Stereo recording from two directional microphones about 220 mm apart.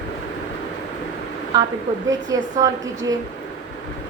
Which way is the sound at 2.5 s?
15° right (ahead or behind).